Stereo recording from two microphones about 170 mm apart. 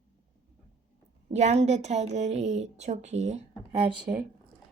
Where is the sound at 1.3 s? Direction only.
40° right (ahead or behind).